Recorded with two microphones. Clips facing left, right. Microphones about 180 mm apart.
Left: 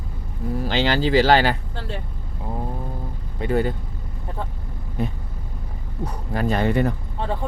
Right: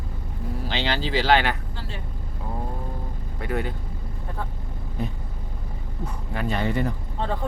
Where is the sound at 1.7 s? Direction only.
60° left (ahead or behind).